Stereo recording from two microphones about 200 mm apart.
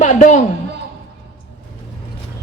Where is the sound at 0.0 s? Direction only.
40° left (ahead or behind).